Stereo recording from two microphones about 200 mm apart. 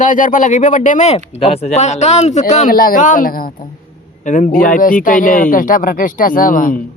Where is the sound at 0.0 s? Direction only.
40° left (ahead or behind).